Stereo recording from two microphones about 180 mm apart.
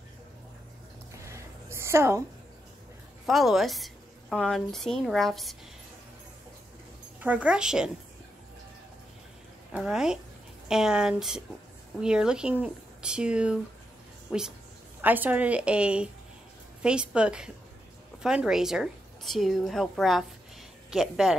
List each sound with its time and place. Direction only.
1.2 s a sound: 15° right (ahead or behind)
3.3 s a woman's voice: centre (ahead or behind)
7.2 s a woman's voice: 5° right (ahead or behind)
9.7 s a woman's voice: 5° right (ahead or behind)